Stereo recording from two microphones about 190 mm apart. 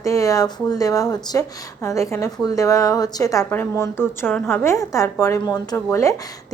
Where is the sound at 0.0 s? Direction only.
15° left (ahead or behind).